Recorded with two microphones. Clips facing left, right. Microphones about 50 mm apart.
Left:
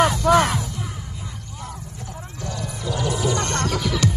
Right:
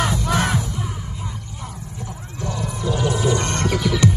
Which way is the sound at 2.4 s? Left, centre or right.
Right.